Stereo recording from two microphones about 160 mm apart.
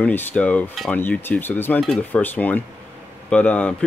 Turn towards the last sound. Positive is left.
turn(degrees=10)  # may be behind; listen again after turning